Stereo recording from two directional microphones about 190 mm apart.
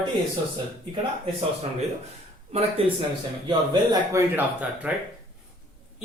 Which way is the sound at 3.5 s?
20° right (ahead or behind).